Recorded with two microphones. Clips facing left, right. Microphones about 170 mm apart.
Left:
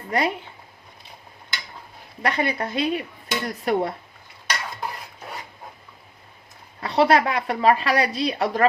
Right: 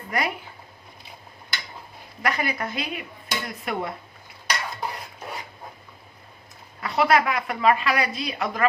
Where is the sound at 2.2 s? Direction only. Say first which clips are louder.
Left 3 dB; 30° left (ahead or behind).